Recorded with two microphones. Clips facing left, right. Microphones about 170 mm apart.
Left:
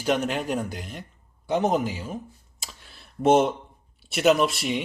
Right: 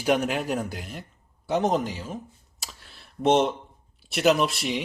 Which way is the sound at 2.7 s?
Centre (ahead or behind).